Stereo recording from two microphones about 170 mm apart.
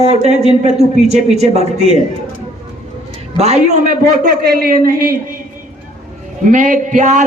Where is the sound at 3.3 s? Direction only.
40° right (ahead or behind); by 5.4 s 60° right (ahead or behind).